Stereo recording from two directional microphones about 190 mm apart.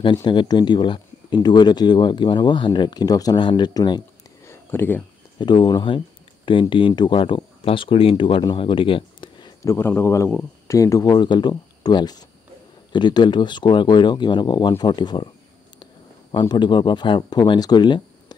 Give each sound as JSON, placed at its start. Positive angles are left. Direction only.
{"t": 0.0, "sound": "speech", "side_deg": 25}
{"t": 4.5, "sound": "a sound", "side_deg": 10}
{"t": 5.4, "sound": "speech", "side_deg": 25}